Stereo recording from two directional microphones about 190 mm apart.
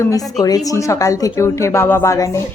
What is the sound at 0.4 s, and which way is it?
A woman's voice, 20° left (ahead or behind).